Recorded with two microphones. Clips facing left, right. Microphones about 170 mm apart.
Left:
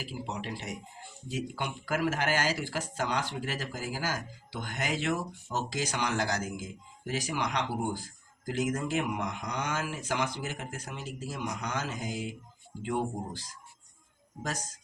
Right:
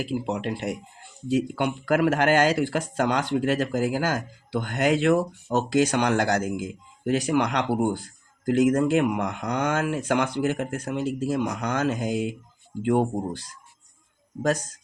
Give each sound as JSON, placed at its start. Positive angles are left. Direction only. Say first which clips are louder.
{"t": 0.0, "sound": "speech", "louder": "right 10 dB", "side_deg": -60}